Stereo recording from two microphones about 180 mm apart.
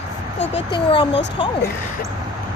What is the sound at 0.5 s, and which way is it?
Speech, 30° left (ahead or behind).